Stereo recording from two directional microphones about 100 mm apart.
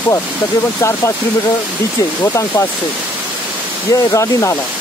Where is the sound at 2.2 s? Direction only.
30° left (ahead or behind).